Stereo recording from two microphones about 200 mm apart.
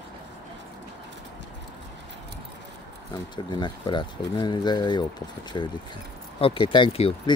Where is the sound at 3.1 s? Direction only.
20° left (ahead or behind).